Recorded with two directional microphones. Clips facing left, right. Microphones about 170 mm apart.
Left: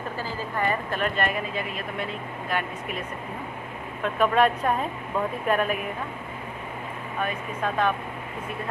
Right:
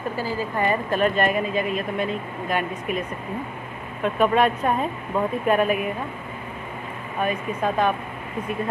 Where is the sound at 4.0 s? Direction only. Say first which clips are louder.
Right 2 dB; 5° right (ahead or behind).